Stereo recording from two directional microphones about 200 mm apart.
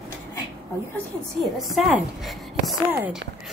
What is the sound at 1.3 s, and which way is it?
Speech, centre (ahead or behind).